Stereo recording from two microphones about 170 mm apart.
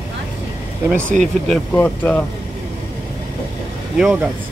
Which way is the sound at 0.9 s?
5° left (ahead or behind).